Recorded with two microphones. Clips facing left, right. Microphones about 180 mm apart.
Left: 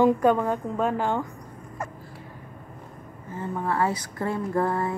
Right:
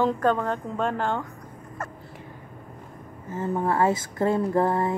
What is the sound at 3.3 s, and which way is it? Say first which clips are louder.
Speech: right 3 dB; 25° right (ahead or behind).